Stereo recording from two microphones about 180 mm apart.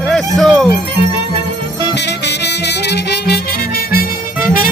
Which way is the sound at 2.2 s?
70° left (ahead or behind).